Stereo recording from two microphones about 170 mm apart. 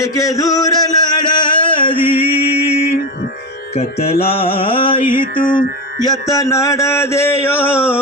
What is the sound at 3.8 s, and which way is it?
Music, 35° left (ahead or behind).